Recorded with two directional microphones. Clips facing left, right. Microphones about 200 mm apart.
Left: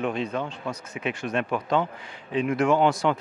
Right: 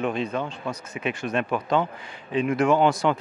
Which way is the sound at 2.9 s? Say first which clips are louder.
Right 1 dB; 25° right (ahead or behind).